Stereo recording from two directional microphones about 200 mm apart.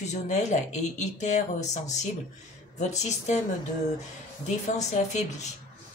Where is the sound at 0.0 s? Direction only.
35° left (ahead or behind).